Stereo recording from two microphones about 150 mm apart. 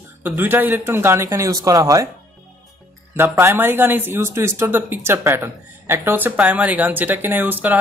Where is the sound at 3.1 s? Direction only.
15° right (ahead or behind).